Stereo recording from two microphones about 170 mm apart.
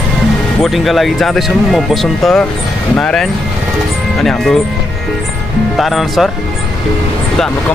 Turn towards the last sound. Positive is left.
turn(degrees=0)  # may be behind; listen again after turning